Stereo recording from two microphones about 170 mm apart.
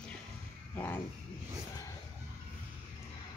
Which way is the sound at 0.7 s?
10° left (ahead or behind).